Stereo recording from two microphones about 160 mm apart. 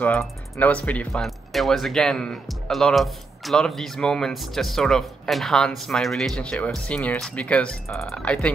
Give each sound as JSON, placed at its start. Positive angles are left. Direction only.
{"t": 0.2, "sound": "speech", "side_deg": 10}